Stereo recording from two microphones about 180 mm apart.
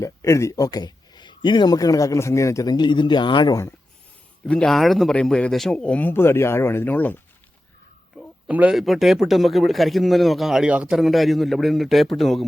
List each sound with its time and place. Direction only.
0.0 s speech: 15° left (ahead or behind)
4.4 s speech: 5° left (ahead or behind)
8.4 s a man's voice: 5° right (ahead or behind)